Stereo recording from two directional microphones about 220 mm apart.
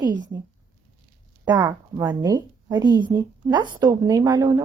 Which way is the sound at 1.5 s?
20° right (ahead or behind).